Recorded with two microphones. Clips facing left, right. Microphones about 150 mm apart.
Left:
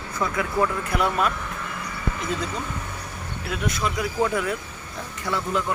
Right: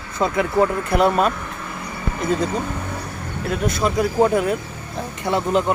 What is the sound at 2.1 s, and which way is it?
Speech, 45° right (ahead or behind).